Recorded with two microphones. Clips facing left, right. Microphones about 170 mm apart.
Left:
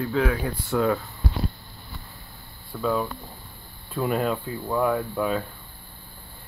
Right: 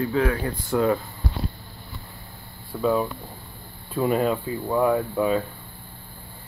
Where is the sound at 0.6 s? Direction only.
5° right (ahead or behind).